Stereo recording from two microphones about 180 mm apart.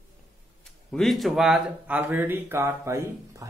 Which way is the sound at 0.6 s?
Centre (ahead or behind).